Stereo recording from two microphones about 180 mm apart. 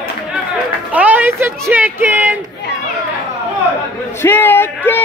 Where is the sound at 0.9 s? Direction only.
10° right (ahead or behind).